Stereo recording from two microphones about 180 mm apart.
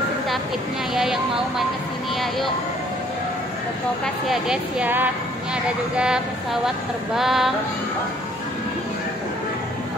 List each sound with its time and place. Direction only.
0.9 s speech: centre (ahead or behind)
4.0 s speech: centre (ahead or behind)